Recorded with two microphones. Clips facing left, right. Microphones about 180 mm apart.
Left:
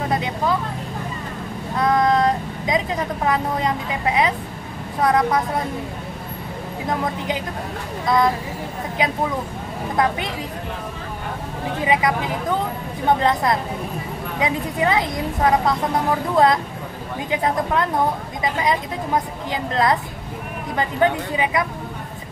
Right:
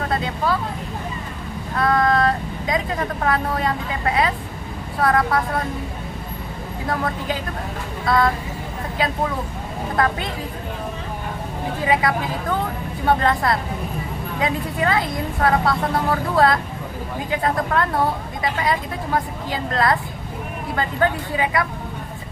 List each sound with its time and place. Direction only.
0.1 s vehicle: 20° left (ahead or behind)
1.8 s speech: 20° left (ahead or behind)
8.0 s speech: 20° left (ahead or behind)
9.9 s a woman's voice: 20° left (ahead or behind)
11.8 s speech: 20° left (ahead or behind)